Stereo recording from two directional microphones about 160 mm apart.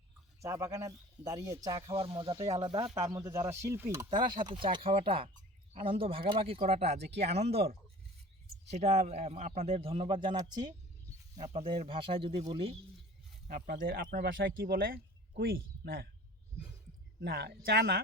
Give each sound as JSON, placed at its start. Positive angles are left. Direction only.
{"t": 0.4, "sound": "a man's voice", "side_deg": -20}
{"t": 2.0, "sound": "a man's voice", "side_deg": -35}
{"t": 2.9, "sound": "speech", "side_deg": -20}
{"t": 4.4, "sound": "a man's voice", "side_deg": -30}
{"t": 8.7, "sound": "a man's voice", "side_deg": -45}
{"t": 13.7, "sound": "speech", "side_deg": -65}
{"t": 17.2, "sound": "speech", "side_deg": -90}